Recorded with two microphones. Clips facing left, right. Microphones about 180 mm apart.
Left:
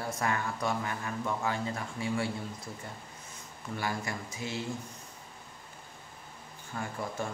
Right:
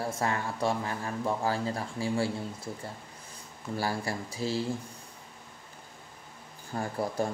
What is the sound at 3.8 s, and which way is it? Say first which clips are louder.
Speech: right 3 dB; 35° right (ahead or behind).